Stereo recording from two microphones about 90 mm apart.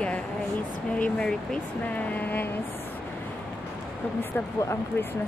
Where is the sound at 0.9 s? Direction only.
15° left (ahead or behind).